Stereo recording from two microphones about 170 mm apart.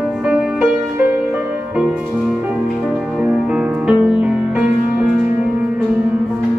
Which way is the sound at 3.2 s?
5° right (ahead or behind).